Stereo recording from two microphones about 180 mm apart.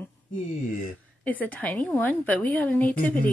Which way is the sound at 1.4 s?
5° left (ahead or behind).